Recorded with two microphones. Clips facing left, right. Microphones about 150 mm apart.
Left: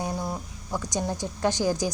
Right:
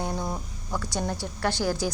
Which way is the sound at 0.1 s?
Centre (ahead or behind).